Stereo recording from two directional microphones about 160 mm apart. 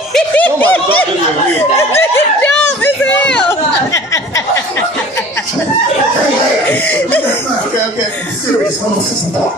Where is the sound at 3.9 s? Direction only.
20° left (ahead or behind).